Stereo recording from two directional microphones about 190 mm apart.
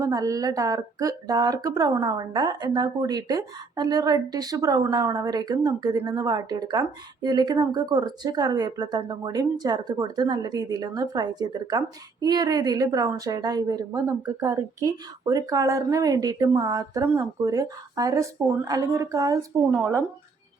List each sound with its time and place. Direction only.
0.0 s speech: 15° right (ahead or behind)
19.7 s speech: 5° right (ahead or behind)